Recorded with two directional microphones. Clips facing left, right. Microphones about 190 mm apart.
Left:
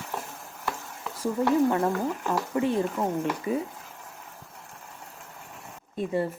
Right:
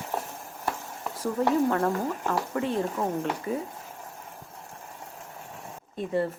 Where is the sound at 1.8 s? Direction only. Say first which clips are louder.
Even; 20° left (ahead or behind).